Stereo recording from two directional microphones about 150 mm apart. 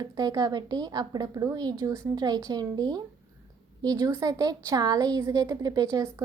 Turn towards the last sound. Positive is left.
turn(degrees=-20)  # may be behind; listen again after turning